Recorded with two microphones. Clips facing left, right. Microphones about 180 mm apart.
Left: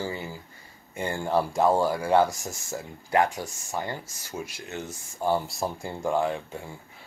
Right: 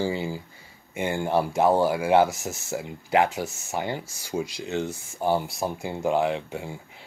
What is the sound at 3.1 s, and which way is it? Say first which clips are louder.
Speech: right 2 dB; 20° right (ahead or behind).